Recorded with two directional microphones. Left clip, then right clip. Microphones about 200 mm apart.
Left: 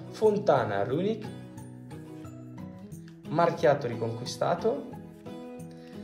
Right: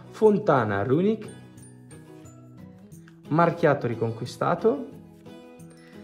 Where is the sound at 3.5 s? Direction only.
30° right (ahead or behind).